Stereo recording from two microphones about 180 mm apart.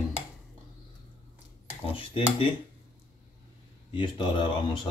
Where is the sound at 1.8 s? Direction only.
30° left (ahead or behind).